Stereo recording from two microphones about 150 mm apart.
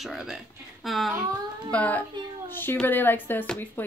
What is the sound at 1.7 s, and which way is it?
A woman's voice, 10° left (ahead or behind).